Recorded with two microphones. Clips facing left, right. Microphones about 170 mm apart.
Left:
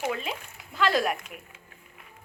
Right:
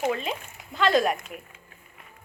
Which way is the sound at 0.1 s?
5° left (ahead or behind).